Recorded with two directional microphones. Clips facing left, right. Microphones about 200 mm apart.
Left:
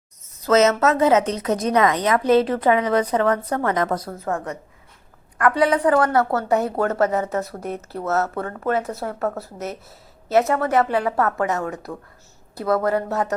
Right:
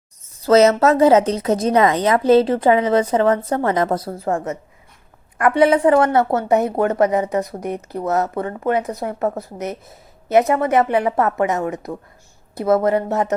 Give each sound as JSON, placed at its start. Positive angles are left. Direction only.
{"t": 0.3, "sound": "a woman's voice", "side_deg": -30}